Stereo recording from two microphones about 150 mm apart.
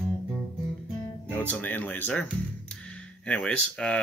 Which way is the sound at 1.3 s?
10° left (ahead or behind).